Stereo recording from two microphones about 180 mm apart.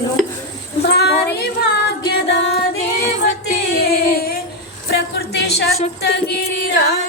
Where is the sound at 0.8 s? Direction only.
65° left (ahead or behind).